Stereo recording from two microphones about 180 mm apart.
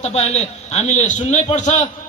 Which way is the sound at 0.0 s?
35° left (ahead or behind).